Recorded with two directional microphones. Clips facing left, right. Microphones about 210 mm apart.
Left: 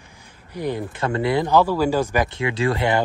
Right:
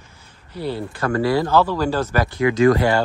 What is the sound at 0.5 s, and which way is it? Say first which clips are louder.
Speech: even; 15° left (ahead or behind).